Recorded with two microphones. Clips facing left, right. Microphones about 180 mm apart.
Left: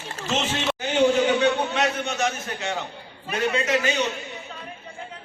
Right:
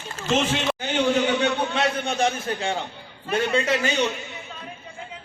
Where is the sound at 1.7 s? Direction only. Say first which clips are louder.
Right 1 dB; 30° right (ahead or behind).